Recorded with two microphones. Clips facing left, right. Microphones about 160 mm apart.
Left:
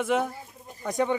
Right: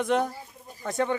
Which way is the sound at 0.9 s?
15° left (ahead or behind).